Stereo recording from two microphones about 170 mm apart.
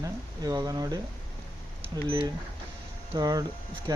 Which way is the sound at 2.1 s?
30° right (ahead or behind).